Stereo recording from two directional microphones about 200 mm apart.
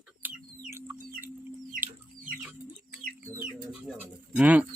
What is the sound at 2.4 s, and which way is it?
Bird, 5° right (ahead or behind).